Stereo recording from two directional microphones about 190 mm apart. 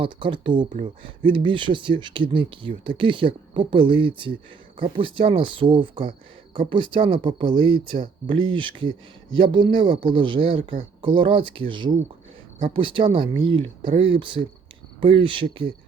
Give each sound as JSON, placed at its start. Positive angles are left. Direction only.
{"t": 0.0, "sound": "speech", "side_deg": -25}